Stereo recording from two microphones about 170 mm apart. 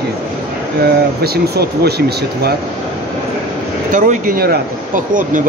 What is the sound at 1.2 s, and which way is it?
Speech, 70° right (ahead or behind).